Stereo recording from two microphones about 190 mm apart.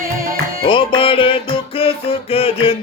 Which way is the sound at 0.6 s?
25° left (ahead or behind).